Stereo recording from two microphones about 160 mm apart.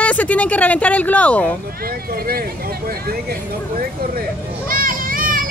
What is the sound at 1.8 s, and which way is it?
Speech, 70° right (ahead or behind).